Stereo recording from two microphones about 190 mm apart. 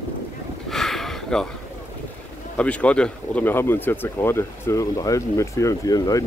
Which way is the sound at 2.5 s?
5° left (ahead or behind).